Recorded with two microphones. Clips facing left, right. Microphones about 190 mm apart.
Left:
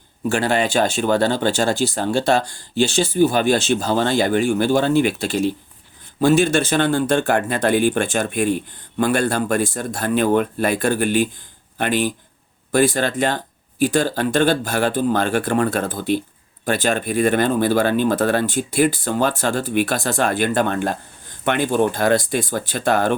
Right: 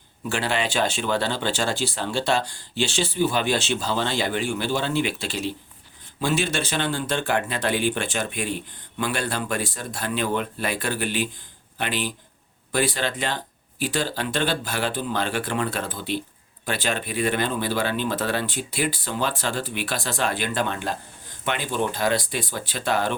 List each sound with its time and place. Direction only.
0.3 s speech: 45° left (ahead or behind)